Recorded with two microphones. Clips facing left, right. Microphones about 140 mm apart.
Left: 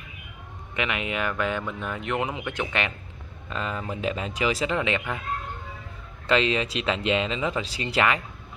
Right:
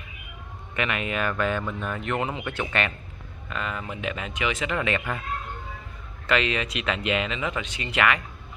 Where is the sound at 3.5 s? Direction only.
30° left (ahead or behind).